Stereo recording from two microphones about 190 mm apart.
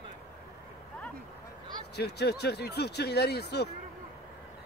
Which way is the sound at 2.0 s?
60° left (ahead or behind).